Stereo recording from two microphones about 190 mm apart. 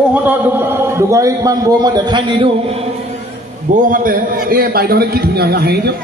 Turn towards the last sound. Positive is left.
turn(degrees=-55)  # may be behind; listen again after turning